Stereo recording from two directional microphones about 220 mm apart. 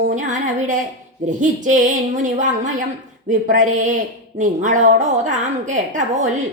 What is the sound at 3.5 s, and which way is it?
A woman's voice, 35° right (ahead or behind).